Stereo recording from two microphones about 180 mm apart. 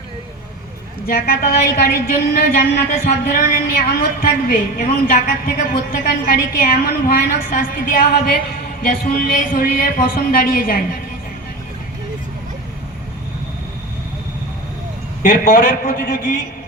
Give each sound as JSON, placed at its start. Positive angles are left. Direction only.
{"t": 1.0, "sound": "a woman's voice", "side_deg": 60}
{"t": 15.2, "sound": "a man's voice", "side_deg": 55}